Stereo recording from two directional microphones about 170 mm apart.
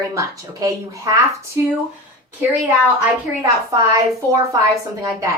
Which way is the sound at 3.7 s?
20° right (ahead or behind).